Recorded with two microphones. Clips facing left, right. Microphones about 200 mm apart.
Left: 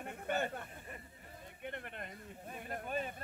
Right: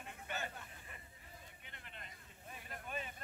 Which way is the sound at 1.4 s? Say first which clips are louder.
Left 14 dB; 55° left (ahead or behind).